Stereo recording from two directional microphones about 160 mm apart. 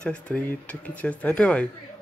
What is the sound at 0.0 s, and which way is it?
Speech, 5° left (ahead or behind).